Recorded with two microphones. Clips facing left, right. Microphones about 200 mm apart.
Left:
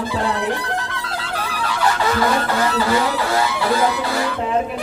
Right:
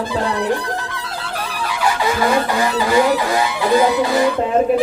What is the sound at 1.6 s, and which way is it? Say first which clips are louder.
Goose: right 1 dB; 10° right (ahead or behind).